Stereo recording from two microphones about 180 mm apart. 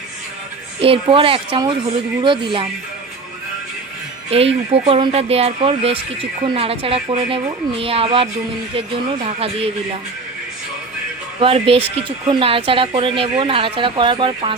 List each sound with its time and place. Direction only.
0.8 s speech: 30° right (ahead or behind)
4.3 s speech: 35° right (ahead or behind)
11.3 s speech: 30° right (ahead or behind)